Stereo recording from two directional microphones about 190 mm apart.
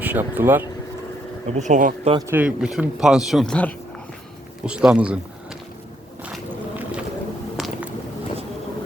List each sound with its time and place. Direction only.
0.0 s speech: 10° right (ahead or behind)
1.5 s speech: 40° right (ahead or behind)
2.1 s speech: 10° right (ahead or behind); by 3.8 s 5° left (ahead or behind)
4.6 s speech: 5° right (ahead or behind)
6.2 s a sound: 5° right (ahead or behind)
7.5 s squish: 5° right (ahead or behind)